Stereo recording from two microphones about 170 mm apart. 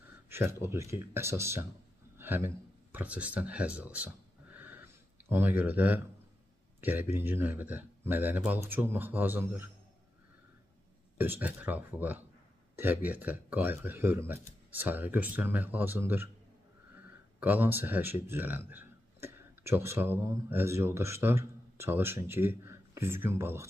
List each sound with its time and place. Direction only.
0.3 s speech: 15° right (ahead or behind)
11.1 s speech: 10° right (ahead or behind)
17.4 s speech: 10° right (ahead or behind)